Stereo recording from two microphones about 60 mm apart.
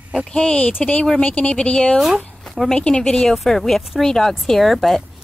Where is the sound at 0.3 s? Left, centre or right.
Centre.